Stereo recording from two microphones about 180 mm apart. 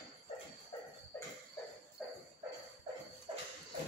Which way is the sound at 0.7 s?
25° left (ahead or behind).